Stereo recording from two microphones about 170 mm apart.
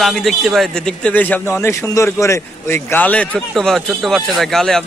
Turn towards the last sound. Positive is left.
turn(degrees=0)  # may be behind; listen again after turning